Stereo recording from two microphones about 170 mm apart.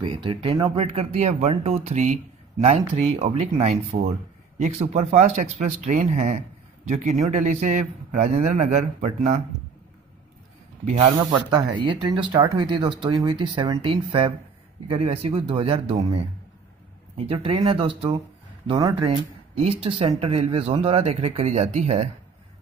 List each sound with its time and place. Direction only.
0.1 s a man's voice: 30° right (ahead or behind)
11.0 s speech: 25° right (ahead or behind)
19.0 s speech: 35° right (ahead or behind)